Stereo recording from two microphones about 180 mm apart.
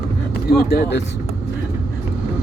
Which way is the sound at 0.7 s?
70° left (ahead or behind).